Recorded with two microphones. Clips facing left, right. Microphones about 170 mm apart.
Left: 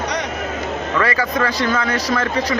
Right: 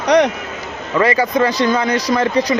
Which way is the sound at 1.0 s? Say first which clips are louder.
Right 6 dB; 20° right (ahead or behind).